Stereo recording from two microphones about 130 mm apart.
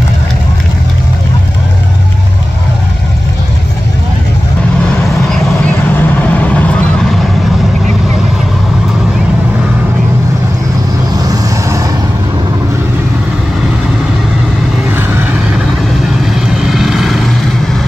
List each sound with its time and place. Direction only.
5.9 s vehicle: 10° left (ahead or behind)
11.1 s vehicle: 25° right (ahead or behind)
16.3 s vehicle: centre (ahead or behind)